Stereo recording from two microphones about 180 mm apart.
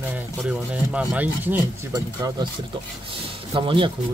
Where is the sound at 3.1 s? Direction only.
30° right (ahead or behind).